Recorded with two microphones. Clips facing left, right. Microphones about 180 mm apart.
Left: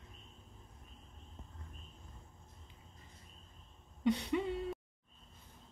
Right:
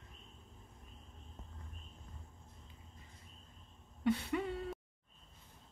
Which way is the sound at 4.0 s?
20° left (ahead or behind).